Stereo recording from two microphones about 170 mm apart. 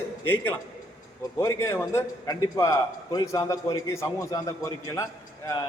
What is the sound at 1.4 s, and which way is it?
A man's voice, 15° left (ahead or behind).